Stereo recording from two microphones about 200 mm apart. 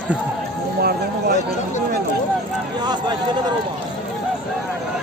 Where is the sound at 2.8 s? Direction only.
20° right (ahead or behind).